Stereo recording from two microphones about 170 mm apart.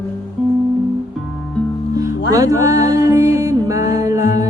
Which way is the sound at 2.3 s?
20° right (ahead or behind).